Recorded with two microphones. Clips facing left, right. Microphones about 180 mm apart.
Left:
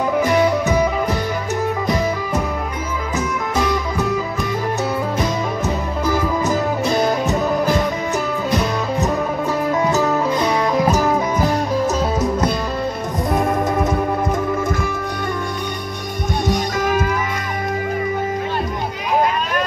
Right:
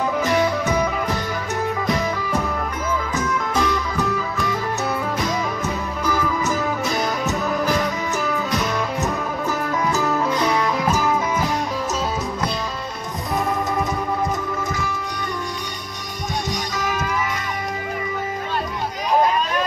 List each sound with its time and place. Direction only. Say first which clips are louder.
6.5 s music: left 4 dB; 30° left (ahead or behind)
9.9 s music: left 3 dB; 20° left (ahead or behind)
16.4 s music: left 10 dB; 55° left (ahead or behind)